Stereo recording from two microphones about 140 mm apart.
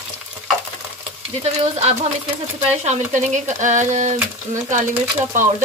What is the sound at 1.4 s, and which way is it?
Speech, 50° right (ahead or behind).